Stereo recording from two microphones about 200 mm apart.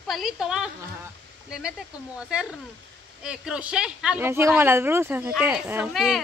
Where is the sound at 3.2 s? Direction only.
5° right (ahead or behind).